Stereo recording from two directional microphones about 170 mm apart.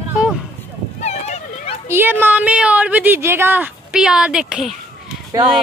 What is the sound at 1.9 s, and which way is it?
Speech, 10° right (ahead or behind).